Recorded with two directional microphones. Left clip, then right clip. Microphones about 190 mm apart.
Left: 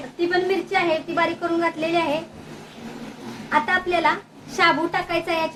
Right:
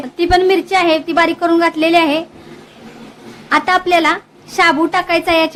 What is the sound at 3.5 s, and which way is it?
A woman's voice, 50° right (ahead or behind).